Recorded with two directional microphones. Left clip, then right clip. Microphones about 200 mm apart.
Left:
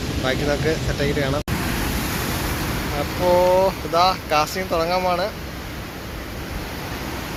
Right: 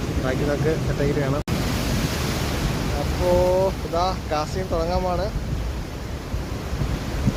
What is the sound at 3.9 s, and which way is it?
Speech, 5° right (ahead or behind).